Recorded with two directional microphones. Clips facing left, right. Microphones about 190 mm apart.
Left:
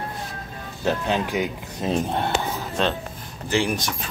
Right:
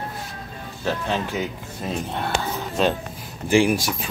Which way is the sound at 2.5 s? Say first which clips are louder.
Right 2 dB; 10° right (ahead or behind).